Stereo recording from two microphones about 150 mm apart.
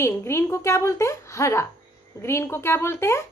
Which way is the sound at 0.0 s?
15° left (ahead or behind).